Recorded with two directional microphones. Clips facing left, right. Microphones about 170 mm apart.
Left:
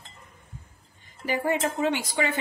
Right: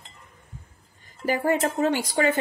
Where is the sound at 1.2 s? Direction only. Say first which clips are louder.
Right 3 dB; 45° right (ahead or behind).